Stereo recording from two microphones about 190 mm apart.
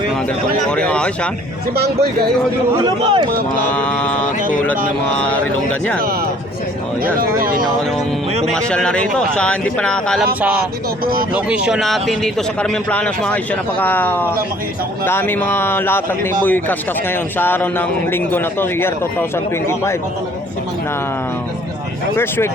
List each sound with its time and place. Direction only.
0.7 s speech: 5° left (ahead or behind)
1.7 s a man's voice: 55° right (ahead or behind)
2.8 s a man's voice: 25° right (ahead or behind)
3.7 s speech: 10° left (ahead or behind)
7.0 s speech: 50° right (ahead or behind)
8.4 s speech: 5° left (ahead or behind)
11.0 s speech: 50° right (ahead or behind)
11.3 s speech: 5° right (ahead or behind); by 20.0 s 15° left (ahead or behind)
22.1 s speech: 15° left (ahead or behind)